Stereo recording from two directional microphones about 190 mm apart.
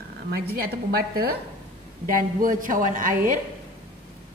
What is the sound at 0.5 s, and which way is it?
A woman's voice, 55° right (ahead or behind).